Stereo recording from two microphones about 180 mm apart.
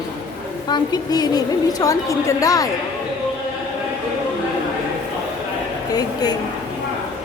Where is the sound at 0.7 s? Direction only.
20° left (ahead or behind).